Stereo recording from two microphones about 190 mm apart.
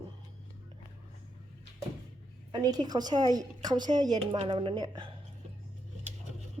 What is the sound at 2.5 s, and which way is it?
A woman's voice, 20° right (ahead or behind).